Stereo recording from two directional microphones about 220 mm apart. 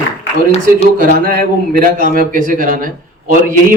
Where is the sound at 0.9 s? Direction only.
40° right (ahead or behind).